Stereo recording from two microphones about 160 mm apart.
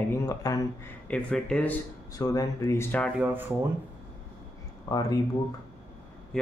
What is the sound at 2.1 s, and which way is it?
Speech, 20° left (ahead or behind).